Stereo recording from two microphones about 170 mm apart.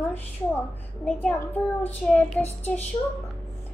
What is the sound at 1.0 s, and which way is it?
A child's voice, 5° left (ahead or behind).